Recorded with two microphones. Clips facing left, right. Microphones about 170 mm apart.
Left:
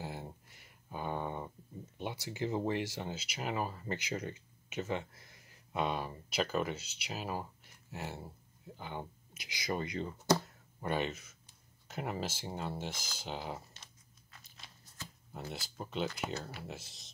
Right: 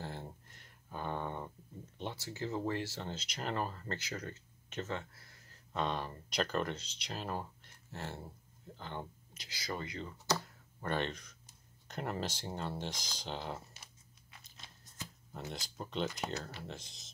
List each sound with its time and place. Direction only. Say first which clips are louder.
0.0 s a sound: left 1 dB; 10° left (ahead or behind)
2.0 s speech: left 3 dB; 15° left (ahead or behind)
4.0 s speech: left 4 dB; 20° left (ahead or behind)
15.5 s speech: even; 5° left (ahead or behind)